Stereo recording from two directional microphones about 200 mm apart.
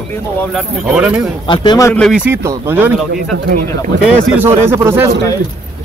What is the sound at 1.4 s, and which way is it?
Speech, 25° left (ahead or behind).